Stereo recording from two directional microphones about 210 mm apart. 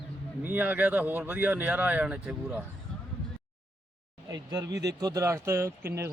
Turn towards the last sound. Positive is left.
turn(degrees=-10)  # may be behind; listen again after turning